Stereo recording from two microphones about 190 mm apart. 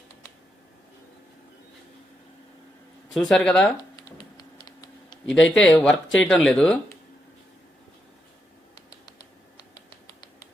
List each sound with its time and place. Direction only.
3.1 s speech: centre (ahead or behind)
3.9 s computer keyboard: 55° left (ahead or behind)
5.4 s speech: 5° left (ahead or behind)